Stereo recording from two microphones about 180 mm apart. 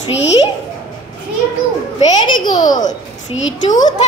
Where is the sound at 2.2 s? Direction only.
25° left (ahead or behind).